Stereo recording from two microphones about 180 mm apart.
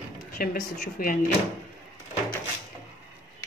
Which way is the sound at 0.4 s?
55° left (ahead or behind).